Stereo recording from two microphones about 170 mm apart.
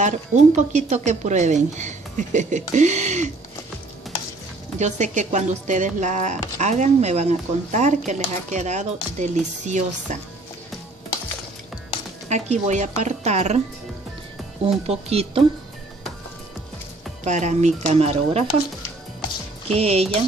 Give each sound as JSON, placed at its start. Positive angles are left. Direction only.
{"t": 0.0, "sound": "speech", "side_deg": -45}
{"t": 4.7, "sound": "speech", "side_deg": -45}
{"t": 12.3, "sound": "speech", "side_deg": -45}
{"t": 14.7, "sound": "speech", "side_deg": -35}
{"t": 17.2, "sound": "speech", "side_deg": -45}
{"t": 19.7, "sound": "speech", "side_deg": -35}